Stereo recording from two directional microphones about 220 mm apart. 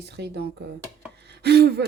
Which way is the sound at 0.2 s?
50° right (ahead or behind).